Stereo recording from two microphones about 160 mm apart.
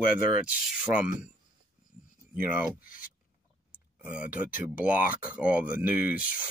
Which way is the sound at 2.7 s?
60° left (ahead or behind).